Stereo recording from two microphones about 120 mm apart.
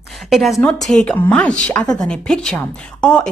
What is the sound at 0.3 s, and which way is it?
A woman's voice, centre (ahead or behind).